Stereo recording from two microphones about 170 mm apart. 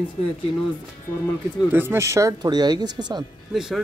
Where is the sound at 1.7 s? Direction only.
15° right (ahead or behind).